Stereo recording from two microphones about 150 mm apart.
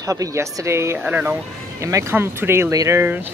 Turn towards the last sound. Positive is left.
turn(degrees=-15)  # may be behind; listen again after turning